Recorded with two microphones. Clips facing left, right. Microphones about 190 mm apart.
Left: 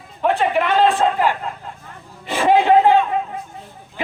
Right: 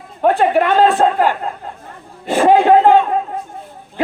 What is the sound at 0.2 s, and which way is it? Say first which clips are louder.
A man's voice: right 5 dB; 45° right (ahead or behind).